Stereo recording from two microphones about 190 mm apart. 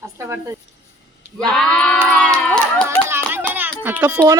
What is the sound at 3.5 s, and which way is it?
Music, 10° right (ahead or behind).